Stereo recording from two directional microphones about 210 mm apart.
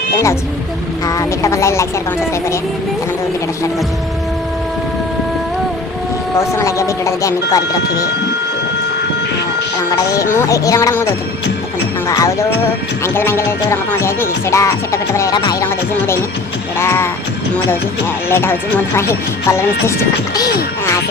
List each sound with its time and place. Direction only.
1.0 s speech: 15° left (ahead or behind)
6.3 s speech: 15° left (ahead or behind)
9.9 s speech: 15° left (ahead or behind)
16.7 s speech: 10° left (ahead or behind)
18.3 s speech: 10° left (ahead or behind)